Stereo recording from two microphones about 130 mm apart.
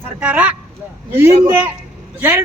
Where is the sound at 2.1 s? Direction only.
15° right (ahead or behind).